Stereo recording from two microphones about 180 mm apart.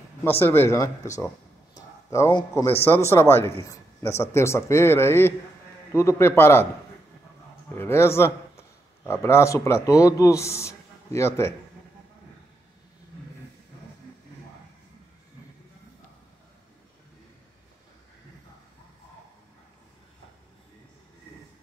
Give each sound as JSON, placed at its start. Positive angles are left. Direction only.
{"t": 0.2, "sound": "speech", "side_deg": 10}
{"t": 7.7, "sound": "a man's voice", "side_deg": 15}